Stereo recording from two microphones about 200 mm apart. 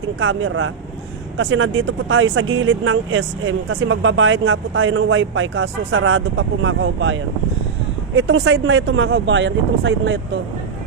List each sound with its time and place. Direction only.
0.2 s speech: 90° right
1.4 s speech: 65° right (ahead or behind)